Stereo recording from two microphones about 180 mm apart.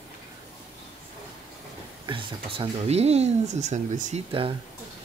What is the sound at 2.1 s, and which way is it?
Speech, 30° right (ahead or behind).